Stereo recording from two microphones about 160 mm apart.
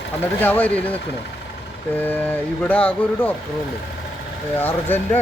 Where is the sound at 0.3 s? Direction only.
10° left (ahead or behind).